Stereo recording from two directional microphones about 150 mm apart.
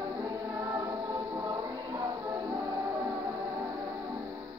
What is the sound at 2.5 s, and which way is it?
Music, 20° right (ahead or behind).